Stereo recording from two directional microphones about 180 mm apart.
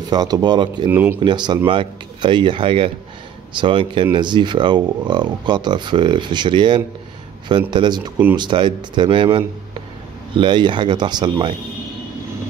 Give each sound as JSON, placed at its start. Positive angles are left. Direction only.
{"t": 0.1, "sound": "speech", "side_deg": -25}
{"t": 0.8, "sound": "speech", "side_deg": -10}
{"t": 1.2, "sound": "speech", "side_deg": -25}